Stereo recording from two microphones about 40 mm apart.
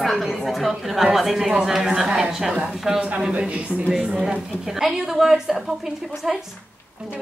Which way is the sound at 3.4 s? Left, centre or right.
Right.